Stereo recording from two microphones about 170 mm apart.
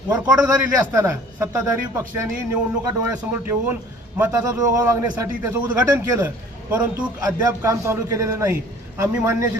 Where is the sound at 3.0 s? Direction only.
15° right (ahead or behind).